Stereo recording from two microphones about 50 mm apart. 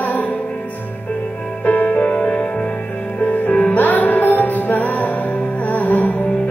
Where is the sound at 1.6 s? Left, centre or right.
Left.